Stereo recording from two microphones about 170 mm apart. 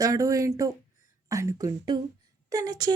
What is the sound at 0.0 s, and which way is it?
A woman's voice, 20° right (ahead or behind).